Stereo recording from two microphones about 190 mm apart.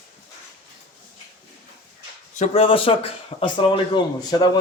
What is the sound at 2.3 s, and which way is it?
Speech, 35° left (ahead or behind).